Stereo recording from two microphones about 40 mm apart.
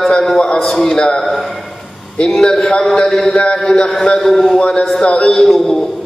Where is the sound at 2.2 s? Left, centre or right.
Centre.